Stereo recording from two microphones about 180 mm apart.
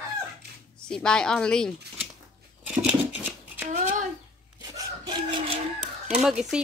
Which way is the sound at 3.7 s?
45° right (ahead or behind).